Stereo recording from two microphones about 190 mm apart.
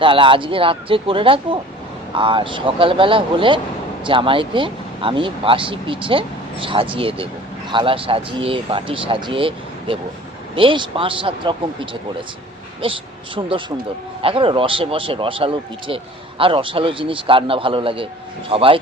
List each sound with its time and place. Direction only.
0.0 s speech: 25° right (ahead or behind)